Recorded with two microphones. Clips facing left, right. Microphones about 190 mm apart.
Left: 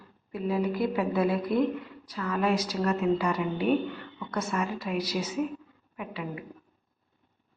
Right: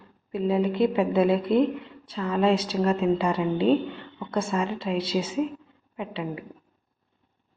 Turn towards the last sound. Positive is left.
turn(degrees=-25)  # may be behind; listen again after turning